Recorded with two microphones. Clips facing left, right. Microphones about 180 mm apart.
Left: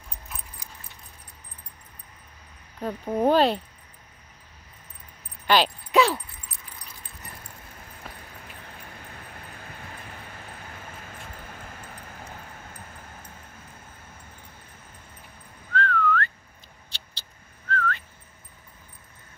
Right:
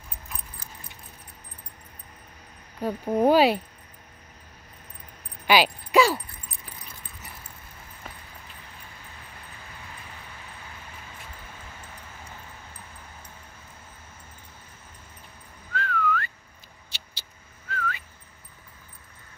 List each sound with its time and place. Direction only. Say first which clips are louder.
0.3 s keys jangling: even; centre (ahead or behind)
2.8 s speech: right 2 dB; 10° right (ahead or behind)
5.5 s speech: right 1 dB; 5° right (ahead or behind)
8.0 s run: even; centre (ahead or behind)
15.7 s whistling: left 3 dB; 5° right (ahead or behind)
17.6 s whistling: left 4 dB; 5° right (ahead or behind)